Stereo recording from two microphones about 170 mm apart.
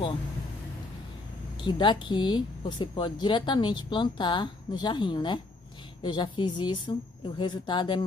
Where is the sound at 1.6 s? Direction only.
25° left (ahead or behind).